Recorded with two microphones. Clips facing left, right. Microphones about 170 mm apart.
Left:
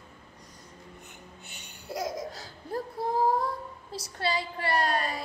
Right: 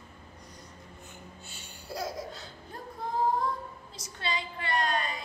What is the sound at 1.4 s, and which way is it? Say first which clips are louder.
Laughter: even; 20° left (ahead or behind).